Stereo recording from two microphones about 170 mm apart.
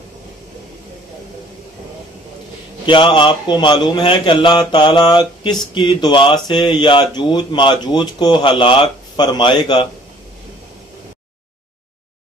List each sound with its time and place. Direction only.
2.9 s speech: 30° left (ahead or behind)